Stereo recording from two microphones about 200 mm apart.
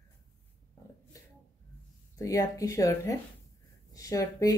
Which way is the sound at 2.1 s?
15° left (ahead or behind).